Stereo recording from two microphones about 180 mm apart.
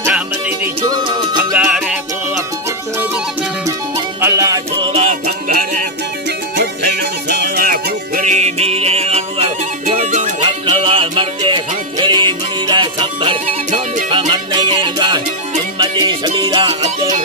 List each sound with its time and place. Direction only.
0.0 s music: 10° right (ahead or behind)
0.8 s music: 25° right (ahead or behind)
1.5 s music: 5° right (ahead or behind)
4.2 s music: 15° right (ahead or behind); by 5.8 s 40° right (ahead or behind)
6.6 s music: 65° right (ahead or behind); by 10.3 s 40° right (ahead or behind)
10.4 s music: 25° right (ahead or behind)